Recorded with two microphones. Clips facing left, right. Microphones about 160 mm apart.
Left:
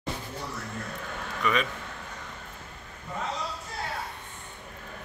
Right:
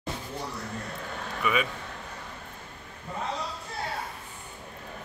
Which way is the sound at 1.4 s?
5° right (ahead or behind).